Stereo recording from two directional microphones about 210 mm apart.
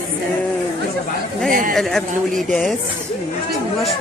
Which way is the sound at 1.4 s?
40° right (ahead or behind).